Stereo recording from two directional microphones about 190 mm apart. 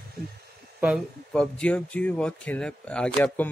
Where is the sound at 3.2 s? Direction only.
15° left (ahead or behind).